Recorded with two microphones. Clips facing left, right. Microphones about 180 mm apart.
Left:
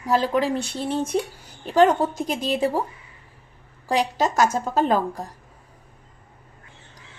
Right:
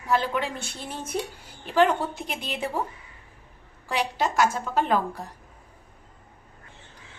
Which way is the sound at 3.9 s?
40° left (ahead or behind).